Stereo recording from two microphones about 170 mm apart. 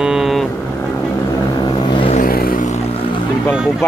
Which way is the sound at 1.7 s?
30° left (ahead or behind).